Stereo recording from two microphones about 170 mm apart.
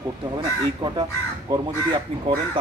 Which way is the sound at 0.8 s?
25° right (ahead or behind).